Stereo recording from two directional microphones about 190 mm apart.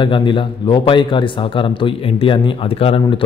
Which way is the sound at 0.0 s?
25° left (ahead or behind).